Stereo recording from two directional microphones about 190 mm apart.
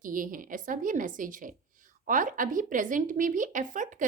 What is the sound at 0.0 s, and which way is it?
A woman's voice, 45° right (ahead or behind).